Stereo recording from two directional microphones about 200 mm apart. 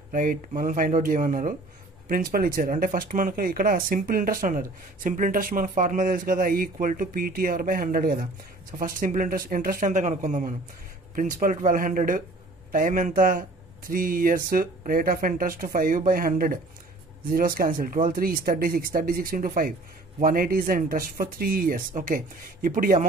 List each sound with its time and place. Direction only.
0.1 s speech: 45° right (ahead or behind)